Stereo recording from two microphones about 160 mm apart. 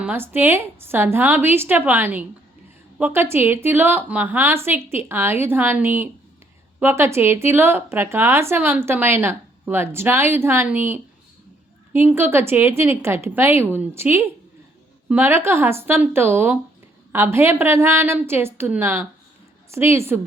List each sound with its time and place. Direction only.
0.0 s speech: 10° right (ahead or behind)